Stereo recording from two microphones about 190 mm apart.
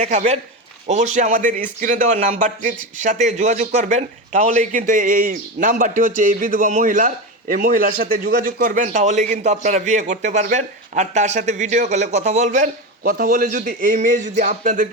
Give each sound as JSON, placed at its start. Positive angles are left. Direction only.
{"t": 0.0, "sound": "a man's voice", "side_deg": -40}